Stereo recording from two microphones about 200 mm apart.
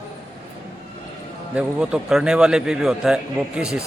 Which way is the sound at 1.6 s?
5° right (ahead or behind).